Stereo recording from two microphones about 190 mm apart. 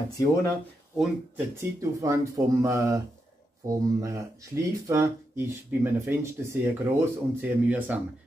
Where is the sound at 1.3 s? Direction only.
15° right (ahead or behind).